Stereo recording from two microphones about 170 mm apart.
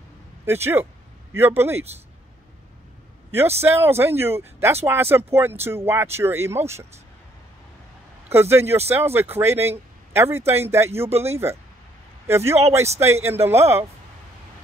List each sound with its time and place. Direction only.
0.5 s speech: 15° right (ahead or behind)
3.6 s speech: 15° right (ahead or behind)
8.3 s speech: 15° right (ahead or behind)
11.1 s speech: 35° right (ahead or behind)
12.3 s speech: 15° right (ahead or behind)